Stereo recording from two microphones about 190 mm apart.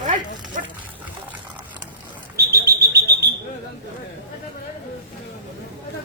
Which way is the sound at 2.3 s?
55° right (ahead or behind).